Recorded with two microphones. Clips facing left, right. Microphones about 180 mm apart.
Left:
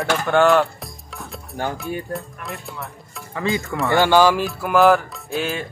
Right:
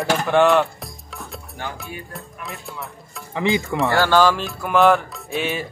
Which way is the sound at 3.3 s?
20° right (ahead or behind).